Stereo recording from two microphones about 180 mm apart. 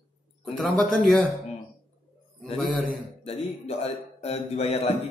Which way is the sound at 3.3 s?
35° left (ahead or behind).